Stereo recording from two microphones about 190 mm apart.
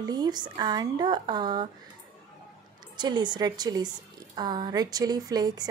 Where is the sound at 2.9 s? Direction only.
25° right (ahead or behind).